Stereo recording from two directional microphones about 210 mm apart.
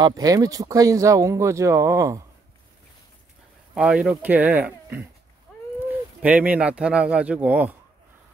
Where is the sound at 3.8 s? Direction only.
5° right (ahead or behind).